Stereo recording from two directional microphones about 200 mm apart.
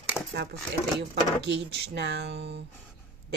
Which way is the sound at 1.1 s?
60° right (ahead or behind).